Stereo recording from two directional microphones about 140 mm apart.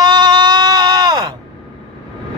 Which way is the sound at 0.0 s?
30° right (ahead or behind).